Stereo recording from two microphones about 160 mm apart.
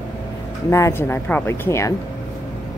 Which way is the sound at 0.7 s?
20° left (ahead or behind).